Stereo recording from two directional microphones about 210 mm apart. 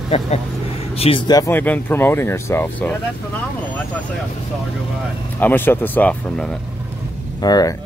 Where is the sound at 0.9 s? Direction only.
25° left (ahead or behind); by 3.0 s 10° left (ahead or behind).